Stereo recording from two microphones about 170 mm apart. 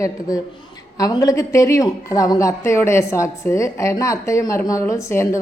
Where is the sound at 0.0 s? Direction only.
20° left (ahead or behind).